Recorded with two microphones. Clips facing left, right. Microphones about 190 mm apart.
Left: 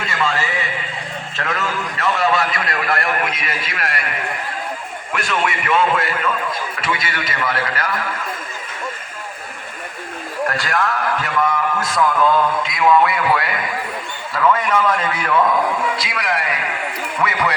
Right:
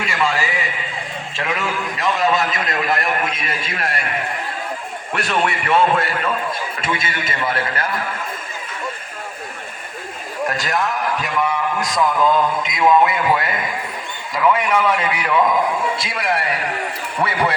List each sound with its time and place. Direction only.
0.0 s a sound: 10° right (ahead or behind)
1.4 s a man's voice: 10° right (ahead or behind); by 4.0 s 25° right (ahead or behind)
5.1 s speech: 35° right (ahead or behind)
6.8 s a man's voice: 25° right (ahead or behind)
10.4 s a man's voice: 20° right (ahead or behind)
16.0 s a man's voice: 25° right (ahead or behind)